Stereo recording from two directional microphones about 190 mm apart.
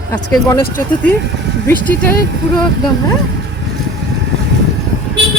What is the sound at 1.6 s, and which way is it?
Speech, 10° left (ahead or behind).